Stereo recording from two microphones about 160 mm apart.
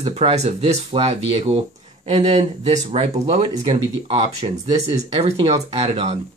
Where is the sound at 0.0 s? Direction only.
40° right (ahead or behind).